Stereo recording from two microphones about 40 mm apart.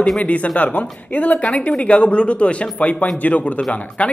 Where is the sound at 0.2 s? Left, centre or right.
Left.